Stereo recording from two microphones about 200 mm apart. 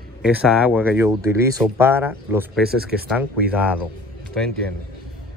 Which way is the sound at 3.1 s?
10° right (ahead or behind).